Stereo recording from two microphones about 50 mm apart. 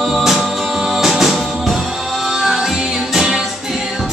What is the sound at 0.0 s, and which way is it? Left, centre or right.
Music, centre.